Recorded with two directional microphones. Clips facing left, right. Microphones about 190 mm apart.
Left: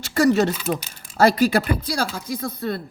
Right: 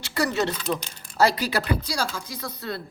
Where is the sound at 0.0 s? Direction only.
45° left (ahead or behind).